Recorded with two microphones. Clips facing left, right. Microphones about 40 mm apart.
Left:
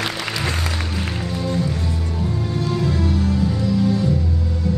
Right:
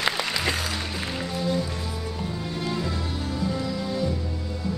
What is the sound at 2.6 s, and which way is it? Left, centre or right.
Music, centre.